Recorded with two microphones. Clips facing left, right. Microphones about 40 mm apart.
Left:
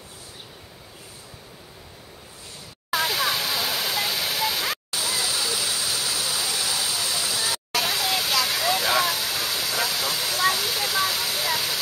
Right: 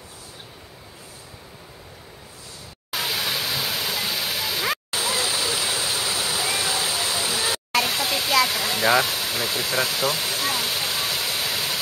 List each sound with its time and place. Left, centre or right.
2.9 s waterfall: centre
4.9 s waterfall: right
7.8 s waterfall: centre
8.5 s a sound: centre
9.4 s speech: centre
10.5 s waterfall: centre